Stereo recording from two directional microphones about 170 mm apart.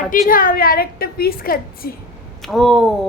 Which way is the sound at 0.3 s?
55° left (ahead or behind).